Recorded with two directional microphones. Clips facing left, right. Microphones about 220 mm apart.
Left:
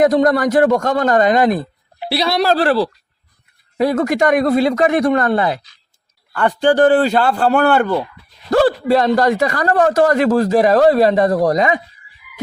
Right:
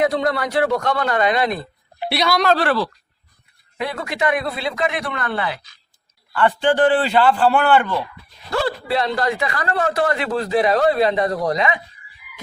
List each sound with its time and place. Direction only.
0.0 s a man's voice: 45° left (ahead or behind)
2.0 s a man's voice: 30° left (ahead or behind)